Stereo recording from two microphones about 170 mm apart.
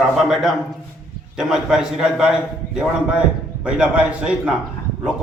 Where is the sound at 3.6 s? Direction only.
5° right (ahead or behind).